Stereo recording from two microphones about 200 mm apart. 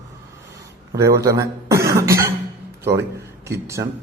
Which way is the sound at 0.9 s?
15° right (ahead or behind).